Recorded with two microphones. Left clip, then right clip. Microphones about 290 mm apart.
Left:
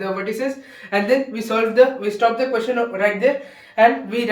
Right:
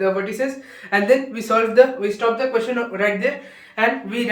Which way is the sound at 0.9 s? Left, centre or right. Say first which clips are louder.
Right 2 dB; centre.